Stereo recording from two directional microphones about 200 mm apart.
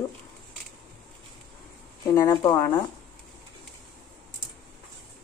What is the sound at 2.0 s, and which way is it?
Speech, 15° left (ahead or behind).